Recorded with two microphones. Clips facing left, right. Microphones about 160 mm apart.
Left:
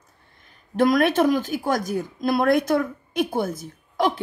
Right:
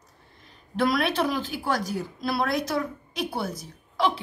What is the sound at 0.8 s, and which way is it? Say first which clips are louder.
A woman's voice: left 6 dB; 45° left (ahead or behind).